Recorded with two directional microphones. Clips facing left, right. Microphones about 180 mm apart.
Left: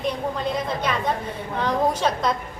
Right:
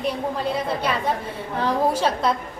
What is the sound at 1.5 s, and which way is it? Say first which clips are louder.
Speech: right 1 dB; 5° right (ahead or behind).